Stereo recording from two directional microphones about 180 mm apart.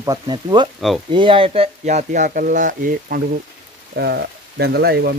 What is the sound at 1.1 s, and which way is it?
Speech, 30° right (ahead or behind).